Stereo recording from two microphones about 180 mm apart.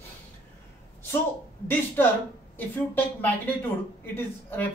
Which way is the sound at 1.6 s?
10° left (ahead or behind).